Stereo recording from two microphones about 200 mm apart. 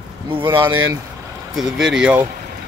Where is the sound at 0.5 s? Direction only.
10° right (ahead or behind).